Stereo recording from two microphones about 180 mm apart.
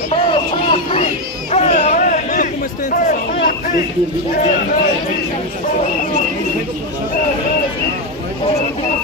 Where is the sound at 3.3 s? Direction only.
60° left (ahead or behind).